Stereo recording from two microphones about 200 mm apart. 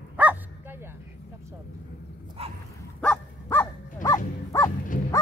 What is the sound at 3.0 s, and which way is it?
Dog, 10° left (ahead or behind).